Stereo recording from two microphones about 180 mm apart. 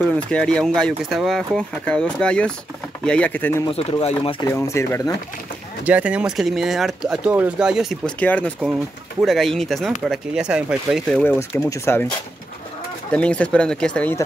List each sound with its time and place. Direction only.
0.1 s speech: 5° left (ahead or behind)
3.7 s speech: 30° left (ahead or behind)
4.5 s speech: 15° left (ahead or behind)
5.9 s speech: 5° right (ahead or behind)
8.2 s speech: 10° left (ahead or behind)
11.2 s speech: 15° left (ahead or behind)
13.1 s speech: 5° left (ahead or behind)